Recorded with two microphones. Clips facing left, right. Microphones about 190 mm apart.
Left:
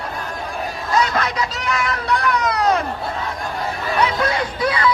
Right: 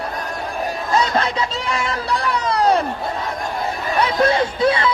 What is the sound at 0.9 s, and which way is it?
Speech, 30° right (ahead or behind).